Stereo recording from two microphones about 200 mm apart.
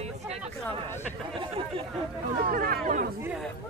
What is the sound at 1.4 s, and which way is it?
Speech, 30° right (ahead or behind).